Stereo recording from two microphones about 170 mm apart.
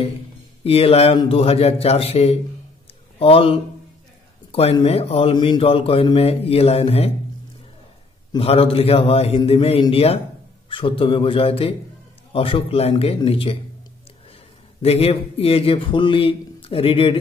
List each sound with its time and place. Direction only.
0.7 s speech: 35° left (ahead or behind)
8.3 s speech: 35° left (ahead or behind)
14.8 s speech: 35° left (ahead or behind)